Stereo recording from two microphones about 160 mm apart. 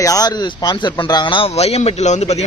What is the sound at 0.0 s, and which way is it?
A man's voice, 20° left (ahead or behind).